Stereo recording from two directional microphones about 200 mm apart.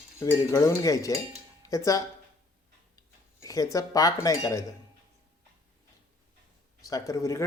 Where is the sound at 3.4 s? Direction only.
15° left (ahead or behind).